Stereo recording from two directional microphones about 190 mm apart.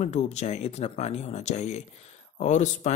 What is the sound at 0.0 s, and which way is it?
Speech, 35° left (ahead or behind).